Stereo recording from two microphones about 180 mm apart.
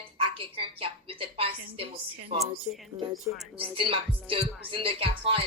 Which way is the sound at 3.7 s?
30° right (ahead or behind).